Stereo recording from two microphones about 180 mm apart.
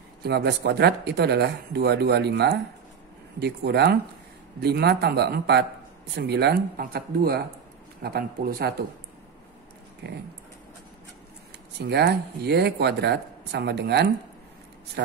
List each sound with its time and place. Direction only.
0.2 s speech: 65° right (ahead or behind)
10.0 s speech: 65° right (ahead or behind)
11.8 s speech: 65° right (ahead or behind)